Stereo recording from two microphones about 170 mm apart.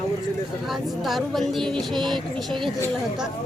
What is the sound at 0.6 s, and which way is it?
Speech, centre (ahead or behind).